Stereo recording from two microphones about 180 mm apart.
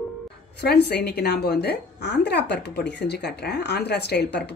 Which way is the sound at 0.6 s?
65° left (ahead or behind).